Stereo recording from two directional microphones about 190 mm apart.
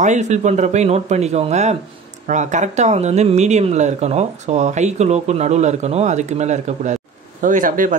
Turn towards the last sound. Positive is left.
turn(degrees=-45)  # may be behind; listen again after turning